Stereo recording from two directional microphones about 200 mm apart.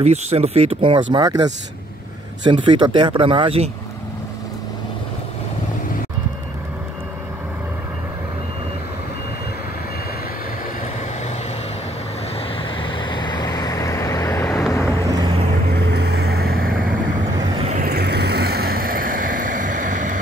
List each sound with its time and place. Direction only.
0.0 s speech: 30° right (ahead or behind)
1.1 s speech: 20° right (ahead or behind)
12.4 s vehicle: 25° left (ahead or behind)
15.0 s vehicle: 20° right (ahead or behind)
15.7 s vehicle: 55° right (ahead or behind)
17.4 s vehicle: 20° right (ahead or behind)
17.6 s vehicle: 45° right (ahead or behind)